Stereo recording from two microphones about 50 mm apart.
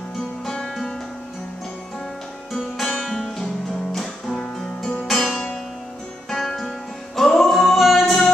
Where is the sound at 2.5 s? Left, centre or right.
Centre.